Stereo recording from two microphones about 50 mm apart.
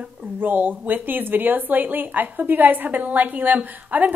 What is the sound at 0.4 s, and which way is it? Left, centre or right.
Speech, right.